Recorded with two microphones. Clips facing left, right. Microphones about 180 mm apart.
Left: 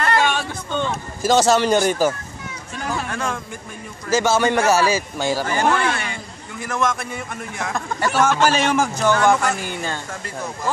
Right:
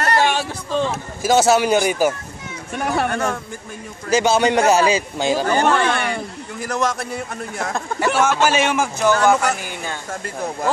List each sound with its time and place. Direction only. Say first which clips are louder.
0.7 s speech: right 3 dB; 30° right (ahead or behind)
1.2 s a man's voice: right 1 dB; 5° right (ahead or behind)
2.7 s speech: right 6 dB; 65° right (ahead or behind)
4.1 s a man's voice: right 2 dB; 15° right (ahead or behind)
5.9 s a sound: right 6 dB; 60° right (ahead or behind)
6.6 s a man's voice: right 1 dB; 40° right (ahead or behind)
8.0 s a man's voice: even; 10° right (ahead or behind)